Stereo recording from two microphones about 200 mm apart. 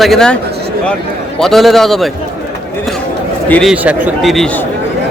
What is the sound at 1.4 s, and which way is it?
Speech, centre (ahead or behind).